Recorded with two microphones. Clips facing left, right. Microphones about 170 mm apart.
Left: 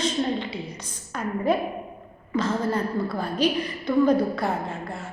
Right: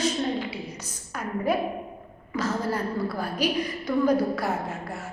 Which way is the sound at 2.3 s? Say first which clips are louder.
Left 3 dB; 10° right (ahead or behind).